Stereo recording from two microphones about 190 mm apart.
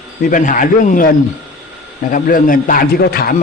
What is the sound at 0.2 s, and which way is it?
Speech, 45° left (ahead or behind).